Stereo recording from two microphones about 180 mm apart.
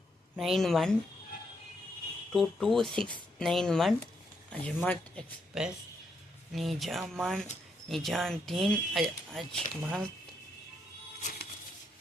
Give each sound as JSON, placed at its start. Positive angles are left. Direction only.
{"t": 0.3, "sound": "speech", "side_deg": 0}
{"t": 2.3, "sound": "speech", "side_deg": 0}
{"t": 11.2, "sound": "music", "side_deg": 50}